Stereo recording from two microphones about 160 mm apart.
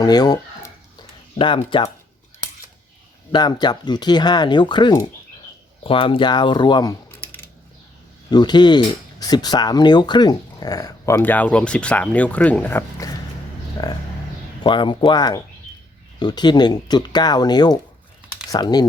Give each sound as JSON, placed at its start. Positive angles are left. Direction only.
{"t": 0.0, "sound": "chicken", "side_deg": 25}
{"t": 1.4, "sound": "speech", "side_deg": 30}
{"t": 3.3, "sound": "speech", "side_deg": 25}
{"t": 8.3, "sound": "speech", "side_deg": 25}
{"t": 13.8, "sound": "speech", "side_deg": 25}